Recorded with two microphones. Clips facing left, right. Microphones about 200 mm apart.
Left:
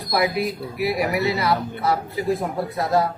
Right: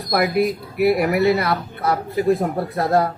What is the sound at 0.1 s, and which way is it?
Speech, 55° right (ahead or behind).